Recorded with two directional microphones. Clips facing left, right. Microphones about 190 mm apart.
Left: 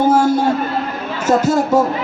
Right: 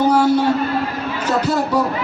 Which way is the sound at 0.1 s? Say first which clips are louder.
Left 1 dB; 45° left (ahead or behind).